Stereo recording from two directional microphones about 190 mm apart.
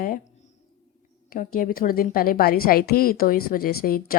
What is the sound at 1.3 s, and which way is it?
A woman's voice, 45° left (ahead or behind).